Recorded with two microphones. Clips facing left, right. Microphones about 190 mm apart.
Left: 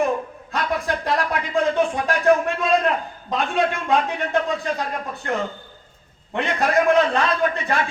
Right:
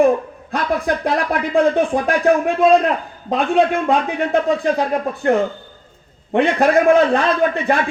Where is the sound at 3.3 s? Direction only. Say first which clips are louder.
Right 6 dB; 35° right (ahead or behind).